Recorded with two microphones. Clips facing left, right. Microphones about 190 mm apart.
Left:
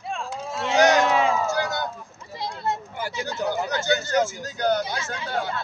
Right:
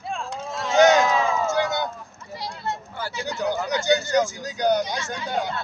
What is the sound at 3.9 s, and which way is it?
Speech, 15° right (ahead or behind).